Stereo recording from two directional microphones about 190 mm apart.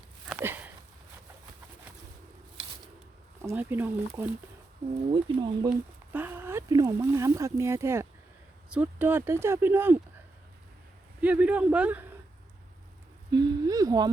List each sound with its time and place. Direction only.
0.3 s a sound: 10° right (ahead or behind)
3.4 s speech: 10° right (ahead or behind)
5.1 s speech: 25° right (ahead or behind)
6.1 s speech: 10° right (ahead or behind)
11.2 s speech: 5° right (ahead or behind)
13.3 s speech: 20° right (ahead or behind)